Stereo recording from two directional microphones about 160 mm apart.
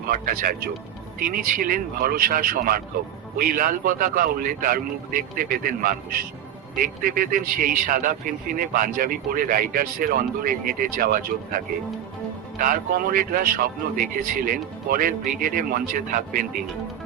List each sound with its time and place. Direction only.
0.1 s a man's voice: 60° right (ahead or behind)